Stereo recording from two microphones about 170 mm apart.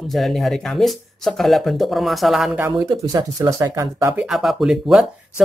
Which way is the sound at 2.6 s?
20° right (ahead or behind).